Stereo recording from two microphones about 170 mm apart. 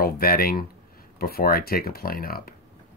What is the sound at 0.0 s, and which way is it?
Speech, 60° left (ahead or behind).